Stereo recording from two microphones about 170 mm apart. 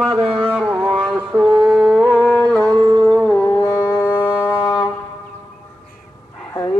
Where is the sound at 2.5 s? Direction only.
20° right (ahead or behind).